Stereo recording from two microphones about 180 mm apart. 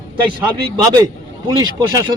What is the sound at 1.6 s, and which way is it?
Speech, 20° right (ahead or behind).